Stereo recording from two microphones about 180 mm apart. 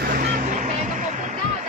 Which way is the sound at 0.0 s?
55° right (ahead or behind).